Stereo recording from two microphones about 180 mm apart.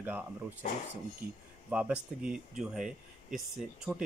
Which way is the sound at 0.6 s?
40° left (ahead or behind).